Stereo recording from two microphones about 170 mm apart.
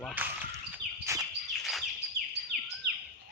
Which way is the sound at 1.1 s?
20° right (ahead or behind).